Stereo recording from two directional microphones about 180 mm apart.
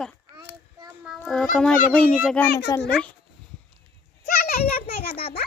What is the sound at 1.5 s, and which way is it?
Speech, 5° left (ahead or behind).